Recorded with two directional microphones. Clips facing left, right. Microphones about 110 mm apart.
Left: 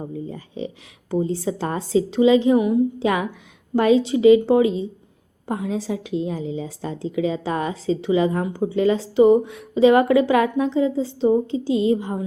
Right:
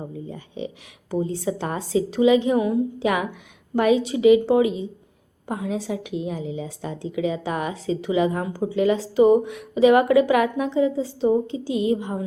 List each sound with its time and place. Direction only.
0.3 s a woman's voice: 35° left (ahead or behind)